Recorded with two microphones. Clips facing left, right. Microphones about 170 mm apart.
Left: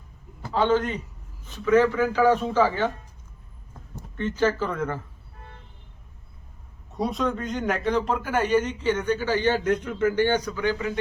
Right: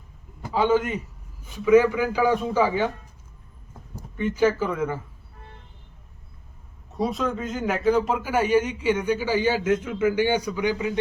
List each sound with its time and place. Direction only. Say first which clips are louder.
0.4 s a man's voice: right 1 dB; 10° right (ahead or behind)
4.2 s speech: right 2 dB; 10° right (ahead or behind)
6.9 s speech: even; centre (ahead or behind); by 10.9 s 15° right (ahead or behind)